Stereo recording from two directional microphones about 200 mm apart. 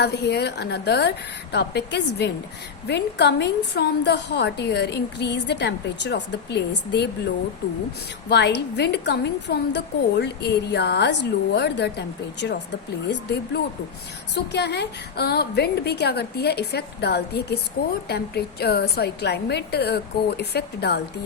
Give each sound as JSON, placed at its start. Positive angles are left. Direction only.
{"t": 0.0, "sound": "a woman's voice", "side_deg": 55}
{"t": 8.3, "sound": "a woman's voice", "side_deg": 55}